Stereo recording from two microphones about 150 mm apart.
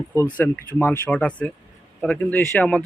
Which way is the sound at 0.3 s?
10° left (ahead or behind).